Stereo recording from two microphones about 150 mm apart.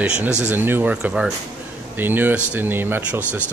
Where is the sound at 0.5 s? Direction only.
10° right (ahead or behind).